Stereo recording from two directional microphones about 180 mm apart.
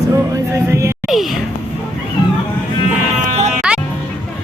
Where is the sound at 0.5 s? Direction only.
15° right (ahead or behind).